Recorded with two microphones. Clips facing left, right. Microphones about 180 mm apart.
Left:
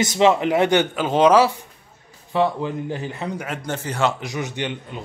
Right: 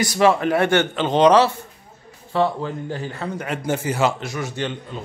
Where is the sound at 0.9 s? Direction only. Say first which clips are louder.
Right 1 dB; 5° left (ahead or behind).